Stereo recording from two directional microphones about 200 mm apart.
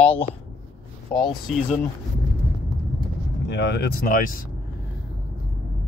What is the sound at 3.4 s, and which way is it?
Speech, 60° left (ahead or behind).